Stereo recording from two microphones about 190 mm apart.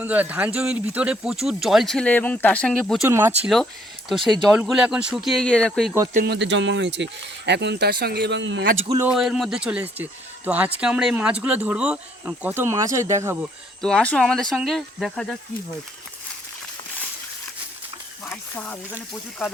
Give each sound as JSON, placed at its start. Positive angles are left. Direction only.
{"t": 0.0, "sound": "speech", "side_deg": -10}
{"t": 3.1, "sound": "speech", "side_deg": -10}
{"t": 4.1, "sound": "speech", "side_deg": 0}
{"t": 6.1, "sound": "speech", "side_deg": -60}
{"t": 9.1, "sound": "speech", "side_deg": 0}
{"t": 13.8, "sound": "speech", "side_deg": 5}
{"t": 18.3, "sound": "speech", "side_deg": 10}